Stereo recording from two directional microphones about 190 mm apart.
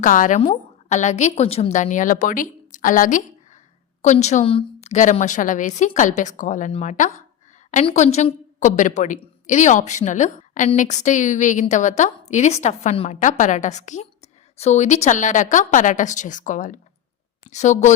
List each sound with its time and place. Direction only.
0.0 s a woman's voice: 45° left (ahead or behind)